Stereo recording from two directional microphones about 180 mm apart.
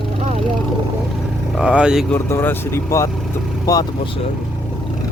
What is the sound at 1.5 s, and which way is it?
Speech, 5° right (ahead or behind).